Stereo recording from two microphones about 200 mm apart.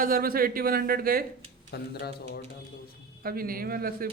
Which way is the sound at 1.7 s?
55° left (ahead or behind).